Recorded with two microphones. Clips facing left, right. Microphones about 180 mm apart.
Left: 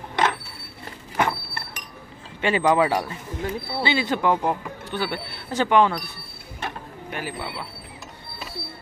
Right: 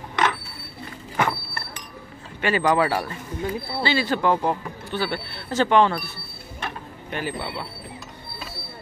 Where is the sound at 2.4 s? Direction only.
20° left (ahead or behind).